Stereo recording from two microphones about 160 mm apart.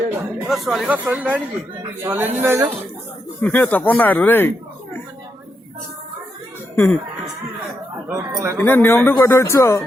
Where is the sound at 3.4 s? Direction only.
10° left (ahead or behind).